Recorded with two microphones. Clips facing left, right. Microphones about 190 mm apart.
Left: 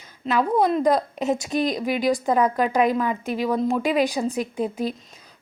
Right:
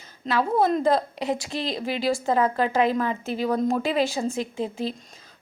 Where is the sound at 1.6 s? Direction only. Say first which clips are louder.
Left 4 dB; 30° right (ahead or behind).